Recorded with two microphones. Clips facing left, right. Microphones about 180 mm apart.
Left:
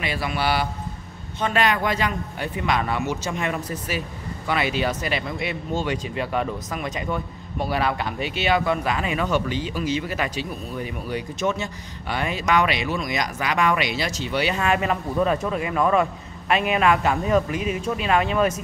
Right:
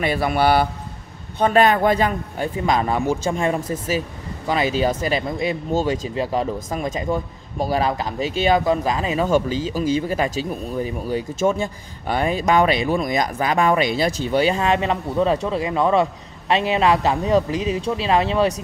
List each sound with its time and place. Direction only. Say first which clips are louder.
0.0 s speech: right 7 dB; 50° right (ahead or behind)
14.5 s speech: right 3 dB; 30° right (ahead or behind)